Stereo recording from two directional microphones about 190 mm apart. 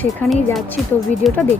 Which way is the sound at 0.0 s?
5° left (ahead or behind).